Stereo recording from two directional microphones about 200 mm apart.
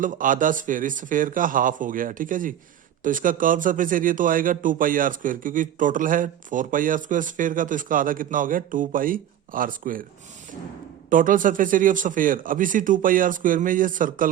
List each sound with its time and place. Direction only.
0.0 s a man's voice: 40° right (ahead or behind)
11.1 s speech: 40° right (ahead or behind)